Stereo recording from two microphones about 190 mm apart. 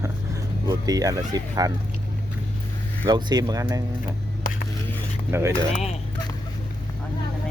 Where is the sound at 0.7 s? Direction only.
20° right (ahead or behind).